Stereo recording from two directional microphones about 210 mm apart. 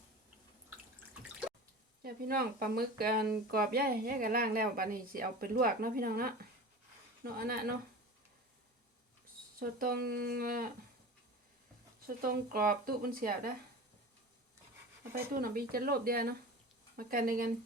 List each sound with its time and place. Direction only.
2.0 s speech: 45° right (ahead or behind)
7.3 s speech: 45° right (ahead or behind)
9.6 s speech: 45° right (ahead or behind)
12.0 s speech: 45° right (ahead or behind)
15.3 s speech: 45° right (ahead or behind)